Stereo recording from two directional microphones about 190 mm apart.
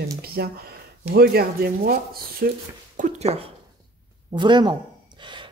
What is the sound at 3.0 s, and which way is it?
Speech, 35° right (ahead or behind).